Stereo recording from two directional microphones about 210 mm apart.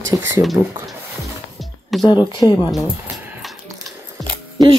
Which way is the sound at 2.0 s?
20° left (ahead or behind).